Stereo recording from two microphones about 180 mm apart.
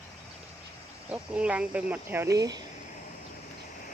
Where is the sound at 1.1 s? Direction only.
5° right (ahead or behind).